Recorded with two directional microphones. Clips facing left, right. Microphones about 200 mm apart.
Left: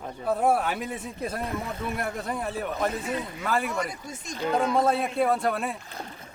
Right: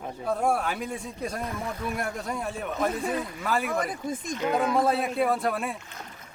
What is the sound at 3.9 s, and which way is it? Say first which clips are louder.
Speech: right 7 dB; 55° right (ahead or behind).